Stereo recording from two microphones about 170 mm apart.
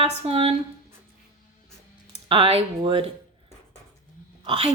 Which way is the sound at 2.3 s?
35° right (ahead or behind).